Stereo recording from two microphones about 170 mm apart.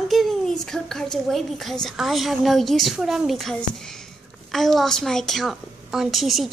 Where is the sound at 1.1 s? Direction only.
Centre (ahead or behind).